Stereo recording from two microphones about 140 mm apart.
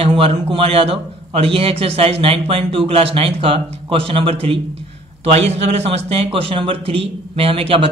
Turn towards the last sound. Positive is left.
turn(degrees=-40)  # may be behind; listen again after turning